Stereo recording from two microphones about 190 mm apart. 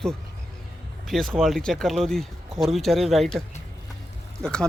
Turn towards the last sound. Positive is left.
turn(degrees=0)  # may be behind; listen again after turning